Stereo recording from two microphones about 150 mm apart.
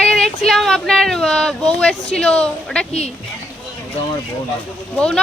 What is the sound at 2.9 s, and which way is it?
Speech, 45° left (ahead or behind).